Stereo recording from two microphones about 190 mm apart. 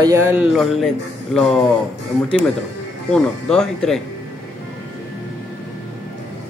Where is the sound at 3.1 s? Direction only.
5° left (ahead or behind).